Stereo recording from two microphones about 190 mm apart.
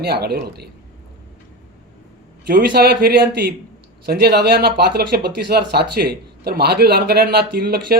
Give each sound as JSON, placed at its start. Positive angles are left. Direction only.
{"t": 0.0, "sound": "speech", "side_deg": -55}
{"t": 2.5, "sound": "speech", "side_deg": -55}